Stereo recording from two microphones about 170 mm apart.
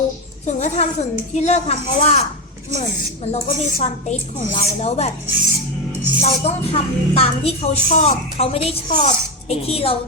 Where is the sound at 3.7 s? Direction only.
40° left (ahead or behind).